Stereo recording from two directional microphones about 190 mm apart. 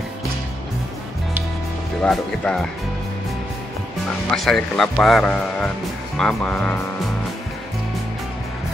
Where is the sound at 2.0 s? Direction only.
5° left (ahead or behind).